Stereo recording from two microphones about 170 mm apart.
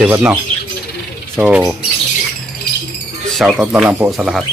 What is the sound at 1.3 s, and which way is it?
Speech, 5° right (ahead or behind).